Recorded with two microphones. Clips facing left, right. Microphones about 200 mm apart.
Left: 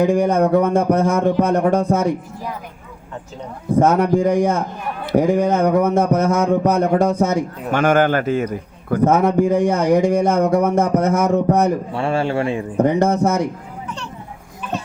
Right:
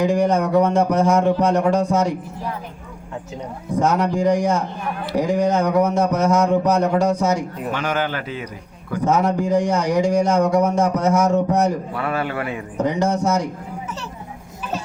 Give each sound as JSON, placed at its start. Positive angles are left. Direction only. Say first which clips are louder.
{"t": 0.0, "sound": "a man's voice", "louder": "left 3 dB", "side_deg": 55}
{"t": 3.8, "sound": "a man's voice", "louder": "left 4 dB", "side_deg": 55}
{"t": 11.9, "sound": "a man's voice", "louder": "left 4 dB", "side_deg": 30}
{"t": 12.8, "sound": "a man's voice", "louder": "left 4 dB", "side_deg": 55}